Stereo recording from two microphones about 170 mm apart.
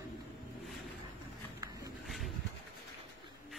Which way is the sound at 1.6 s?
25° right (ahead or behind).